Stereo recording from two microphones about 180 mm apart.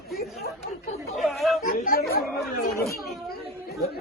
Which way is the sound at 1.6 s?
55° left (ahead or behind).